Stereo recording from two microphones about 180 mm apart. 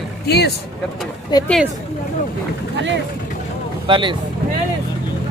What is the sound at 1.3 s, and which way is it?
Speech, 20° left (ahead or behind).